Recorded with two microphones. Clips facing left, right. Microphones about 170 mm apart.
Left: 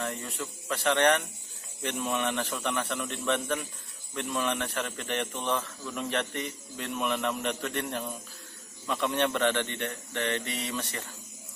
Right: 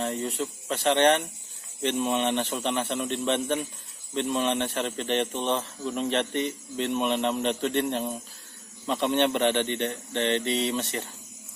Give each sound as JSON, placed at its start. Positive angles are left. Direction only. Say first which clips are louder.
{"t": 0.0, "sound": "a man's voice", "louder": "right 6 dB", "side_deg": -25}